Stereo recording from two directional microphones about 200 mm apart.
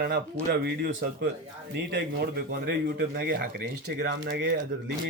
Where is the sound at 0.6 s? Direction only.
50° right (ahead or behind).